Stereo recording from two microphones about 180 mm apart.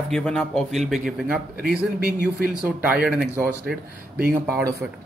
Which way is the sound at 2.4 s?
10° right (ahead or behind).